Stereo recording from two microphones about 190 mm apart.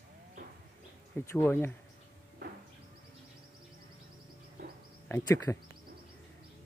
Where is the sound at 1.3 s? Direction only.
15° left (ahead or behind).